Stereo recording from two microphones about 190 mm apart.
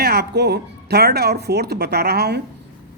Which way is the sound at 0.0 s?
55° right (ahead or behind).